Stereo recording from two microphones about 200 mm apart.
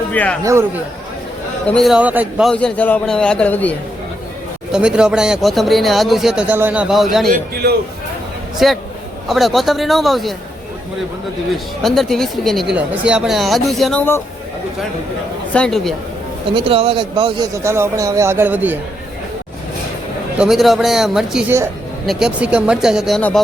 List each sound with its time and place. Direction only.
0.1 s speech: 10° left (ahead or behind)
1.6 s speech: centre (ahead or behind)
2.5 s speech: 5° left (ahead or behind)
4.7 s speech: 5° right (ahead or behind)
8.5 s speech: centre (ahead or behind)
11.5 s speech: centre (ahead or behind)
15.5 s speech: 5° left (ahead or behind)
16.6 s speech: 30° right (ahead or behind); by 18.8 s 10° right (ahead or behind)
20.4 s speech: centre (ahead or behind)